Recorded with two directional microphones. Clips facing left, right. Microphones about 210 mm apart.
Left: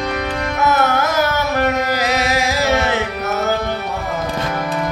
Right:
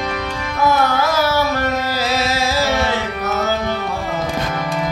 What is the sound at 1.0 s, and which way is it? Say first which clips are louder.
Carnatic music: right 1 dB; 20° left (ahead or behind).